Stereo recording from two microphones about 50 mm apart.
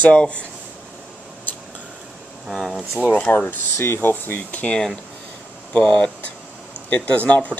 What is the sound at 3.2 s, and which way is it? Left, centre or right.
Speech, left.